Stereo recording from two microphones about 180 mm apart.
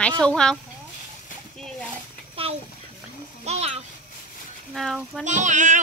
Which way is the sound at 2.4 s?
30° right (ahead or behind).